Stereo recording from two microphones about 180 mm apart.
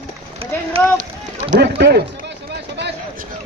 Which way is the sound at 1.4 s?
65° right (ahead or behind).